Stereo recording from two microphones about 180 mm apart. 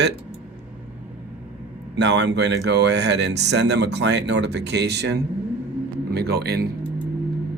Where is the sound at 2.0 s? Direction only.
70° right (ahead or behind).